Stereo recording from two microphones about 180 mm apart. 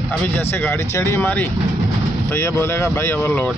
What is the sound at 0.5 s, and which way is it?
Speech, 10° left (ahead or behind).